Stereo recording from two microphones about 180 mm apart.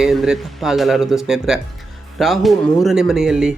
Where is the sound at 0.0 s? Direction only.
Centre (ahead or behind).